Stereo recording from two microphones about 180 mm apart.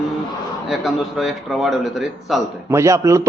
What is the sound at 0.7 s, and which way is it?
Speech, centre (ahead or behind).